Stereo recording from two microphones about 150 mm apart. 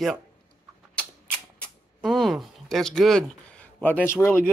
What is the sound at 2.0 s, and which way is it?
Speech, centre (ahead or behind).